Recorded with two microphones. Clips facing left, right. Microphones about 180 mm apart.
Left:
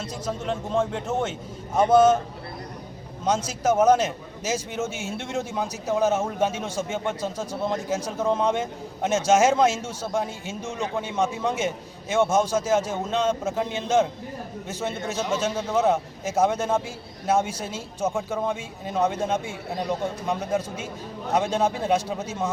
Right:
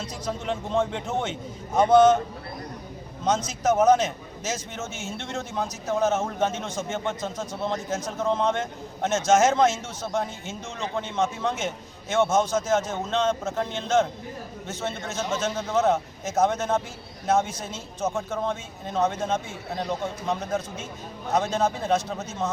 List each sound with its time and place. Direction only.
0.0 s a man's voice: 5° left (ahead or behind)
3.2 s a man's voice: 10° left (ahead or behind)